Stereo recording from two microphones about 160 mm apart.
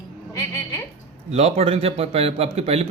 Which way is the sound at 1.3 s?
40° right (ahead or behind).